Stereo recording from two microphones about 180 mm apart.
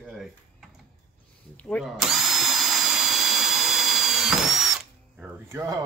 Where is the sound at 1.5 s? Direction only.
5° left (ahead or behind).